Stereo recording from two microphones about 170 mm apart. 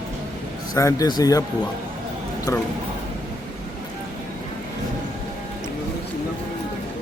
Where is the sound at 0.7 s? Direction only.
20° left (ahead or behind).